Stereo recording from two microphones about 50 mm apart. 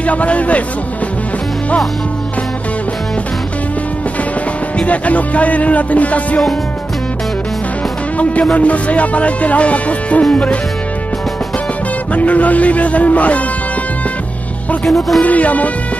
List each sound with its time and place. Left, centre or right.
0.0 s music: left
4.7 s music: left
8.5 s music: left
12.1 s music: left
14.9 s speech: centre
15.2 s music: left